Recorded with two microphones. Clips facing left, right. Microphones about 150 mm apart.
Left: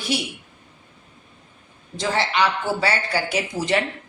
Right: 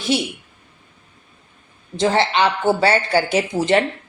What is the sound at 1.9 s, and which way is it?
Speech, 25° right (ahead or behind).